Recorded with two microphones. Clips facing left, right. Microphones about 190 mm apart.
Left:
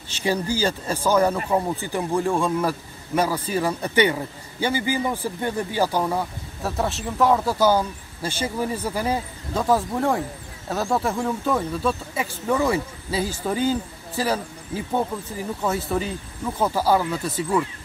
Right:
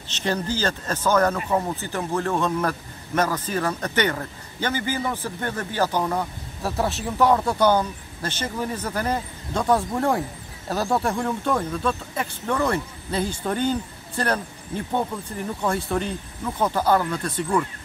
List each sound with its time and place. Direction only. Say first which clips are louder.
0.1 s a man's voice: left 2 dB; 10° left (ahead or behind)